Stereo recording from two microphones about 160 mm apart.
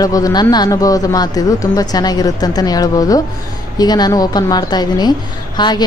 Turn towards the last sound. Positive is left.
turn(degrees=25)  # may be behind; listen again after turning